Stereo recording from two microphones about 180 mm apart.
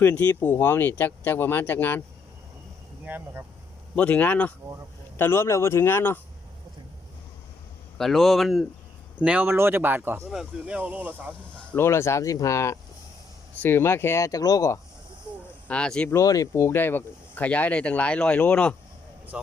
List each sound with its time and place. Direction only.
0.0 s speech: 10° left (ahead or behind)
3.0 s speech: 10° right (ahead or behind)
3.9 s speech: 10° left (ahead or behind)
7.9 s speech: centre (ahead or behind)
11.5 s speech: 10° left (ahead or behind)
15.6 s speech: 5° left (ahead or behind)
16.1 s speech: 20° left (ahead or behind)
19.3 s speech: 5° right (ahead or behind)